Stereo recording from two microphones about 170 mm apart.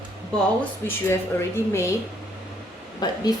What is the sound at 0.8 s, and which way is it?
A woman's voice, 15° left (ahead or behind).